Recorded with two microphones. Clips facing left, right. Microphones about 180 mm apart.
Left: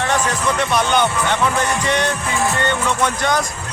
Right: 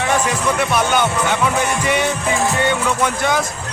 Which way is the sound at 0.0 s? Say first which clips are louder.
Right 1 dB; 10° right (ahead or behind).